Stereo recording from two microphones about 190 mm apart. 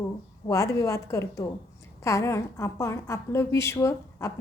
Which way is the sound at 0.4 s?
15° left (ahead or behind).